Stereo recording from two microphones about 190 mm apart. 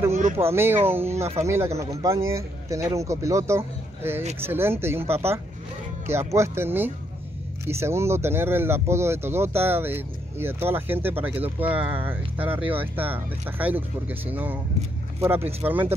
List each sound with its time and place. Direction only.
0.4 s speech: 10° right (ahead or behind)
1.1 s speech: 35° right (ahead or behind)
1.4 s speech: 15° right (ahead or behind)